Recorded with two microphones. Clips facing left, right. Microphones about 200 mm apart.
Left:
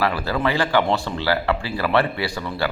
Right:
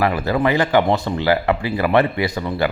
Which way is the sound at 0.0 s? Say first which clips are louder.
Right 4 dB; 20° right (ahead or behind).